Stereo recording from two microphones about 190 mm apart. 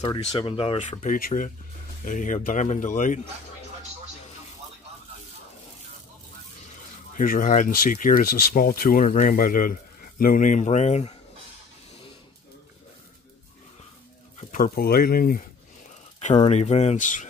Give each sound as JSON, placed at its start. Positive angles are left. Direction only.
{"t": 0.0, "sound": "speech", "side_deg": 25}
{"t": 1.0, "sound": "speech", "side_deg": 45}
{"t": 7.2, "sound": "speech", "side_deg": 45}
{"t": 14.5, "sound": "speech", "side_deg": 50}
{"t": 16.4, "sound": "speech", "side_deg": 35}